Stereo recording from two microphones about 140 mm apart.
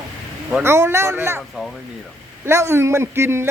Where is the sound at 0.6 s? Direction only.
20° right (ahead or behind).